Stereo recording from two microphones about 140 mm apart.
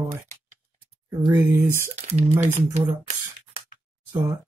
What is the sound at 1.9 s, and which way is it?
Speech, 50° right (ahead or behind).